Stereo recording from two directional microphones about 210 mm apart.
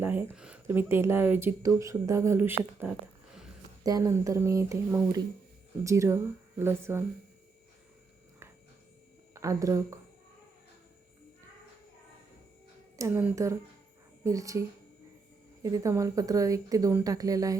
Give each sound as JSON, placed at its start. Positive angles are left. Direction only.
{"t": 0.0, "sound": "speech", "side_deg": -10}
{"t": 3.8, "sound": "speech", "side_deg": -15}
{"t": 9.3, "sound": "speech", "side_deg": -15}
{"t": 13.0, "sound": "speech", "side_deg": -10}
{"t": 15.6, "sound": "speech", "side_deg": -15}